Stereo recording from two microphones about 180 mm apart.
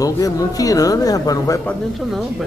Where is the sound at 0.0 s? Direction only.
20° left (ahead or behind).